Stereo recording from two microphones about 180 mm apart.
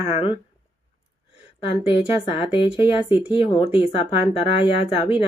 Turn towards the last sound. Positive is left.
turn(degrees=30)  # may be behind; listen again after turning